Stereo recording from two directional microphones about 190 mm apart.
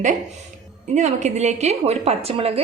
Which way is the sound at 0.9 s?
40° right (ahead or behind).